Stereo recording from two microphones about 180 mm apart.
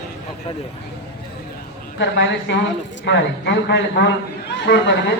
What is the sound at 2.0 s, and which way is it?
A man's voice, 75° left (ahead or behind).